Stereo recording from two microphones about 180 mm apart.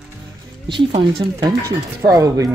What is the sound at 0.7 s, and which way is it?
Speech, 30° right (ahead or behind).